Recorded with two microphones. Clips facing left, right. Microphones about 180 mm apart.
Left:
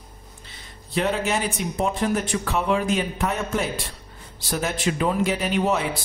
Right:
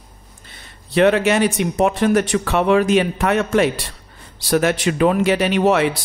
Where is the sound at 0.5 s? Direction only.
75° right (ahead or behind).